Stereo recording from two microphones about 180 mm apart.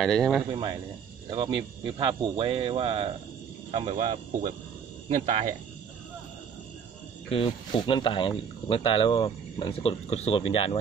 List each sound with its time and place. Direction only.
0.0 s speech: centre (ahead or behind)
0.5 s speech: 25° right (ahead or behind)
3.7 s speech: 45° right (ahead or behind)
7.2 s speech: 30° left (ahead or behind)